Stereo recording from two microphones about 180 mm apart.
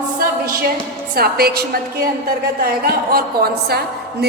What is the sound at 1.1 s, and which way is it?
A woman's voice, 60° right (ahead or behind).